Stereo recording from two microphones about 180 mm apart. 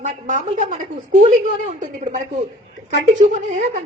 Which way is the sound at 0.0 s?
40° right (ahead or behind).